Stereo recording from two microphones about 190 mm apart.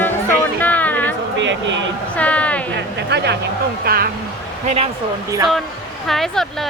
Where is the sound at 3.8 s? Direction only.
55° right (ahead or behind).